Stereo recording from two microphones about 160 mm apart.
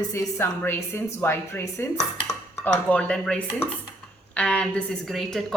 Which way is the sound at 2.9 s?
5° left (ahead or behind).